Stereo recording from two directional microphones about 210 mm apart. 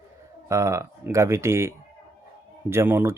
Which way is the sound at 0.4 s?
15° right (ahead or behind).